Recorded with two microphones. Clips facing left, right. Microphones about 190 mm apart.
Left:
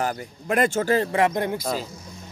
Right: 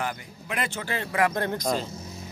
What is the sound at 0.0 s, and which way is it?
Speech, 45° left (ahead or behind).